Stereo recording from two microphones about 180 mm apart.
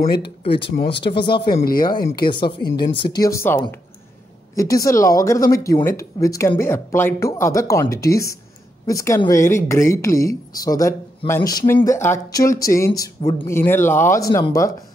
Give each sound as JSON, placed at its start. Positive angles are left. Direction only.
{"t": 0.2, "sound": "speech", "side_deg": 30}
{"t": 1.6, "sound": "speech", "side_deg": 55}
{"t": 1.9, "sound": "a woman's voice", "side_deg": 25}